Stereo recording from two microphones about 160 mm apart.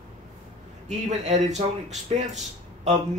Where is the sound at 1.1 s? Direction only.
45° right (ahead or behind).